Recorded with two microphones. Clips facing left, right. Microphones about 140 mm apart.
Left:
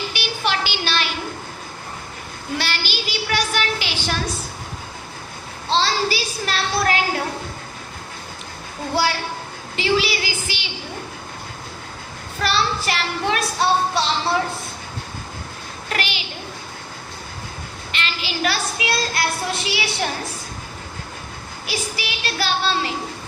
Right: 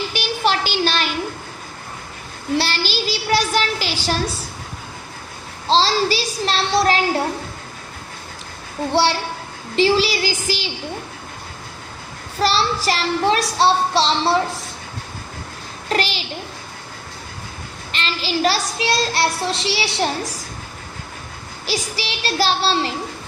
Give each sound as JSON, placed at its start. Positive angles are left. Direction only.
{"t": 0.1, "sound": "a sound", "side_deg": -40}
{"t": 2.6, "sound": "child singing", "side_deg": -35}
{"t": 5.6, "sound": "a child's voice", "side_deg": -35}
{"t": 8.9, "sound": "a woman's voice", "side_deg": -30}
{"t": 12.4, "sound": "a child's voice", "side_deg": -35}
{"t": 15.9, "sound": "a sound", "side_deg": -35}
{"t": 17.9, "sound": "a child's voice", "side_deg": -35}
{"t": 21.7, "sound": "a child's voice", "side_deg": -30}